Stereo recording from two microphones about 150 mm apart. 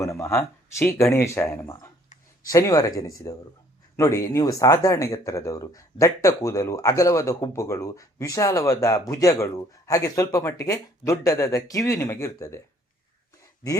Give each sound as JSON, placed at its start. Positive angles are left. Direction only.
{"t": 0.0, "sound": "speech", "side_deg": 20}